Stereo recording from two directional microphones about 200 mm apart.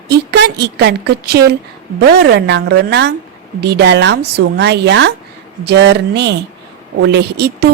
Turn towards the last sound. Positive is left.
turn(degrees=-55)  # may be behind; listen again after turning